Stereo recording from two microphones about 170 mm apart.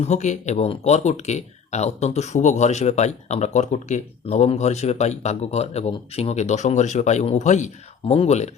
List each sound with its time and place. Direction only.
0.0 s speech: 45° left (ahead or behind)